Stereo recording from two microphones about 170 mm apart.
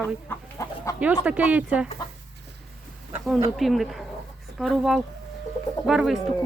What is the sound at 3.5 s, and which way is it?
Speech, centre (ahead or behind).